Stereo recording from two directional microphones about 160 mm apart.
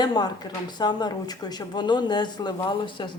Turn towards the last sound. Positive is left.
turn(degrees=30)  # may be behind; listen again after turning